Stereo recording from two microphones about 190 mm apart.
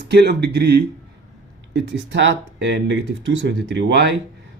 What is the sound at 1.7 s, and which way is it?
Speech, 70° right (ahead or behind).